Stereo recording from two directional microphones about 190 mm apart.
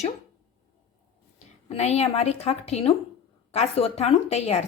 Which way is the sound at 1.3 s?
35° left (ahead or behind).